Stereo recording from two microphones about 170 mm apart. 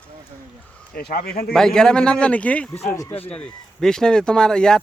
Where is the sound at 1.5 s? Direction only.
5° left (ahead or behind).